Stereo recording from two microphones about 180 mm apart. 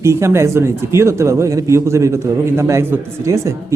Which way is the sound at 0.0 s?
15° right (ahead or behind).